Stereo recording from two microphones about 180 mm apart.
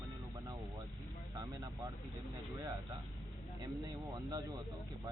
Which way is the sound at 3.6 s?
20° right (ahead or behind).